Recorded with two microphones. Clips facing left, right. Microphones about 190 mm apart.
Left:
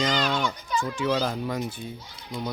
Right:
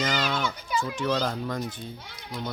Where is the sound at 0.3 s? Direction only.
15° left (ahead or behind).